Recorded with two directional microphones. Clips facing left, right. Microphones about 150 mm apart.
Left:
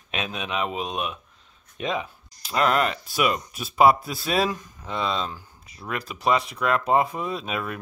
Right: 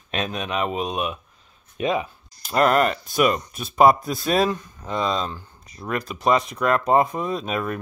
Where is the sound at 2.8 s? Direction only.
5° left (ahead or behind).